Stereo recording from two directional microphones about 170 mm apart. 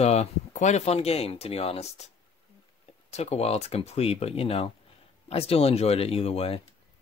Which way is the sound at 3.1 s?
40° left (ahead or behind).